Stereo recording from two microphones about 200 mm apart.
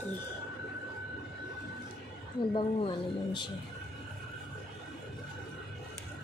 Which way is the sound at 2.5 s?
25° left (ahead or behind).